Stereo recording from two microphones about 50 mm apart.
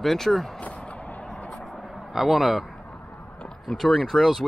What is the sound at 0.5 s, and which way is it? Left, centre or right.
Vehicle, left.